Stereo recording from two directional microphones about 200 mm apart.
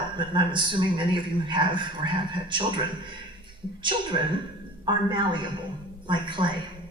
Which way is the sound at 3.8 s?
25° right (ahead or behind).